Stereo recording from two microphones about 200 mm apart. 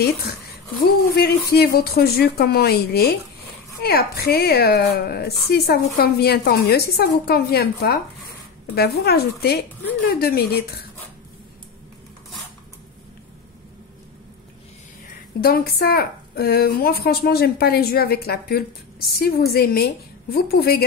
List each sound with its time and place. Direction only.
1.1 s a woman's voice: 50° left (ahead or behind)
15.4 s a woman's voice: 50° left (ahead or behind)